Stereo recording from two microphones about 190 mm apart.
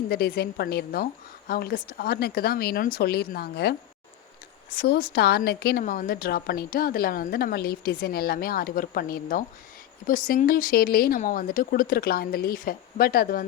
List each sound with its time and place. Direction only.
0.1 s a woman's voice: 55° left (ahead or behind)
4.8 s a woman's voice: 55° left (ahead or behind)